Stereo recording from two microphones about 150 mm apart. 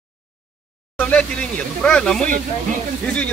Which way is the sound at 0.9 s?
10° left (ahead or behind).